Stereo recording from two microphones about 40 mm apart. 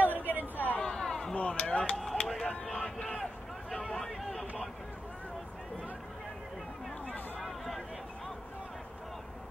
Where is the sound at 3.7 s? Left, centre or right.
Centre.